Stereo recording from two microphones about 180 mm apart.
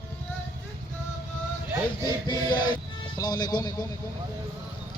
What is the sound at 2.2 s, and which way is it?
Chant, 25° left (ahead or behind).